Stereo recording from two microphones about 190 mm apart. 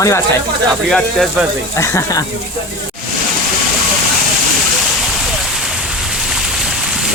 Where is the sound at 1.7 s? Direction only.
15° left (ahead or behind).